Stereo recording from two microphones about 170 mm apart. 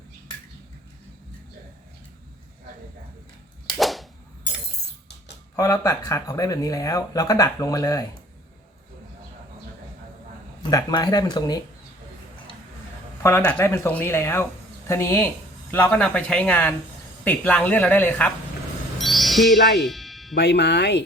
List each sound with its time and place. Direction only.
3.8 s whip: centre (ahead or behind)
5.5 s speech: 20° left (ahead or behind)
10.6 s speech: 20° left (ahead or behind)
13.2 s speech: 15° left (ahead or behind)
18.9 s a sound: centre (ahead or behind)
19.8 s music: centre (ahead or behind)
20.3 s speech: 80° left